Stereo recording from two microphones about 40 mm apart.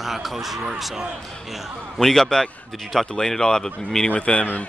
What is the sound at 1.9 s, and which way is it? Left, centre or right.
Speech, centre.